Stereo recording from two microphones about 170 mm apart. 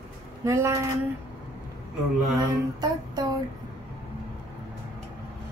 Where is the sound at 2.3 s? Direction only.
25° right (ahead or behind).